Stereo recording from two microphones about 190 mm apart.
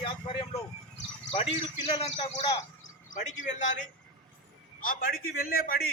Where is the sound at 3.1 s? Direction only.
40° left (ahead or behind).